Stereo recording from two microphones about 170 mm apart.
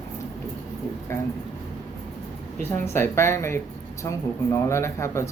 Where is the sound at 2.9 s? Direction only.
15° left (ahead or behind).